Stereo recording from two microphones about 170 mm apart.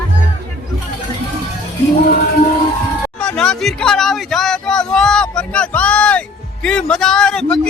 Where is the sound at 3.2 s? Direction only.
5° left (ahead or behind).